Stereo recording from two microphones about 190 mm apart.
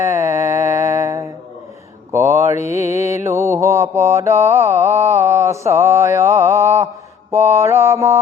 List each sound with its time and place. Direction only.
0.0 s mantra: 15° right (ahead or behind)